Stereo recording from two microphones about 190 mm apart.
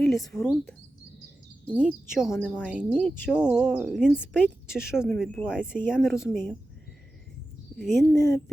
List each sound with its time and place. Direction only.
0.0 s a sound: centre (ahead or behind)
1.6 s a woman's voice: 5° right (ahead or behind)
7.8 s a woman's voice: centre (ahead or behind)
8.1 s a woman's voice: 20° left (ahead or behind)